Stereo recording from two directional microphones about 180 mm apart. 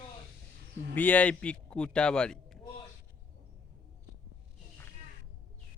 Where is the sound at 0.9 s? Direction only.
10° left (ahead or behind).